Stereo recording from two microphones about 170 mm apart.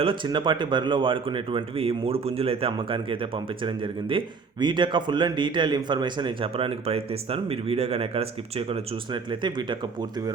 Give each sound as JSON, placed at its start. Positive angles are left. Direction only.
{"t": 0.0, "sound": "a man's voice", "side_deg": -30}